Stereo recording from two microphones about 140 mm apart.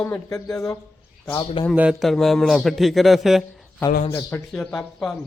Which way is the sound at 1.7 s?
10° right (ahead or behind).